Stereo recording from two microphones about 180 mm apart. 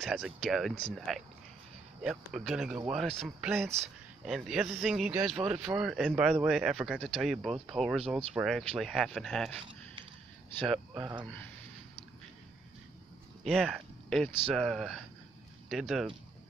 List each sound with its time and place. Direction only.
0.0 s speech: centre (ahead or behind)
11.0 s speech: 20° right (ahead or behind)
11.2 s speech: 10° left (ahead or behind)
13.4 s speech: centre (ahead or behind)